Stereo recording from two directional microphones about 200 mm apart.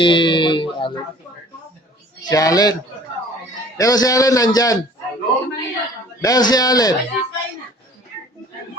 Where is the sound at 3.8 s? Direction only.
15° left (ahead or behind).